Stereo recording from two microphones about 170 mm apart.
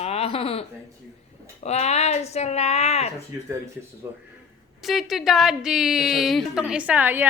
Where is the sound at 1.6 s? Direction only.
40° left (ahead or behind).